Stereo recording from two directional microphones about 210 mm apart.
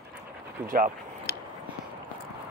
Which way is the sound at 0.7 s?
40° right (ahead or behind).